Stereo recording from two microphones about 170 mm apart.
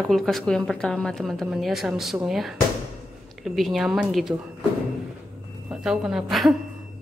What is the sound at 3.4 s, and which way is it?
Speech, centre (ahead or behind).